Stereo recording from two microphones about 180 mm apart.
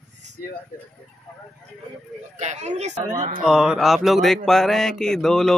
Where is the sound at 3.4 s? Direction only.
5° right (ahead or behind).